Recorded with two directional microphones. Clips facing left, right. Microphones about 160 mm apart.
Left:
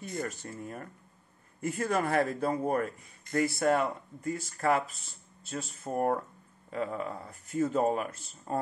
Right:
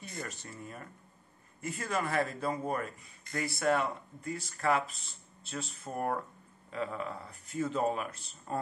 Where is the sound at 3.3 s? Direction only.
45° left (ahead or behind).